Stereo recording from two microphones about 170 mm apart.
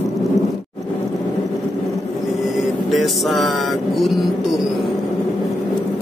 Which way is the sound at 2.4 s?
Centre (ahead or behind).